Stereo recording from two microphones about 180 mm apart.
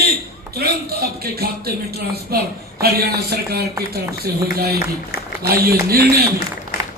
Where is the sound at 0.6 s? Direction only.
60° right (ahead or behind).